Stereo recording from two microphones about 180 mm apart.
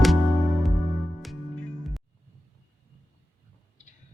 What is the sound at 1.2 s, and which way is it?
Music, 5° left (ahead or behind).